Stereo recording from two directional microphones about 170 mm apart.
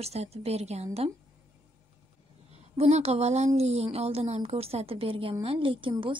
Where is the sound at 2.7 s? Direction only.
40° right (ahead or behind).